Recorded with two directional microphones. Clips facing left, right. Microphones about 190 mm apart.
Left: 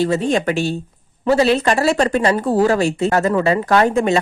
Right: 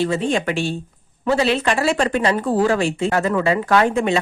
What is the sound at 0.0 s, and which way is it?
Speech, 40° left (ahead or behind).